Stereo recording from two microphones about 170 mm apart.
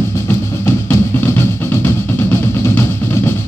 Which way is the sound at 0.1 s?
15° left (ahead or behind).